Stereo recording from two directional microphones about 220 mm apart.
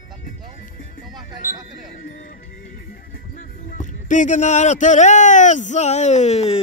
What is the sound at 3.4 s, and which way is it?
Speech, 35° left (ahead or behind).